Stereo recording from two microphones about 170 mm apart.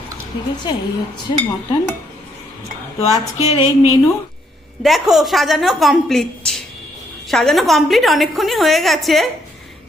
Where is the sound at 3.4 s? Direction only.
40° left (ahead or behind).